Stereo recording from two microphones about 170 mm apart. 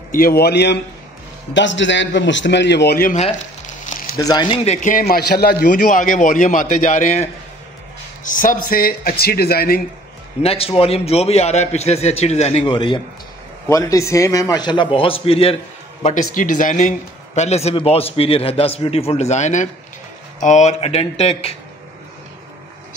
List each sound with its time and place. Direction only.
0.1 s a man's voice: 60° left (ahead or behind)
1.5 s a man's voice: 90° left; by 3.1 s 75° left (ahead or behind)
3.1 s a man's voice: 45° left (ahead or behind)
4.2 s a man's voice: 25° left (ahead or behind)
4.6 s a man's voice: 50° left (ahead or behind)
10.4 s a man's voice: 35° left (ahead or behind)
13.7 s a man's voice: 20° left (ahead or behind); by 21.5 s 35° left (ahead or behind)